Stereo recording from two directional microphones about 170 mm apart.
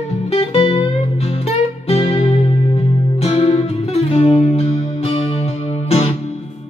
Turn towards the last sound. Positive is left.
turn(degrees=35)  # may be behind; listen again after turning